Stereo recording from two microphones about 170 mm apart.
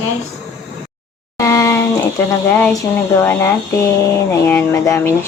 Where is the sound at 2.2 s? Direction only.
15° left (ahead or behind).